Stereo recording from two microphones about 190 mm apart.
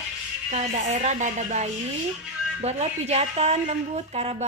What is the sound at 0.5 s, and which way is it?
A woman's voice, 35° right (ahead or behind).